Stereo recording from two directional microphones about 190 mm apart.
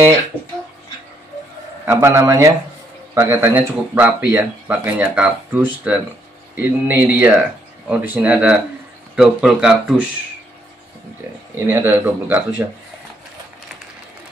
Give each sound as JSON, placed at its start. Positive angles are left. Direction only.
{"t": 1.9, "sound": "speech", "side_deg": -15}
{"t": 11.5, "sound": "speech", "side_deg": -10}